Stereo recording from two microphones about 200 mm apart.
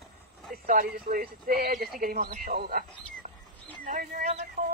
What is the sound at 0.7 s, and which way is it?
Speech, 45° right (ahead or behind).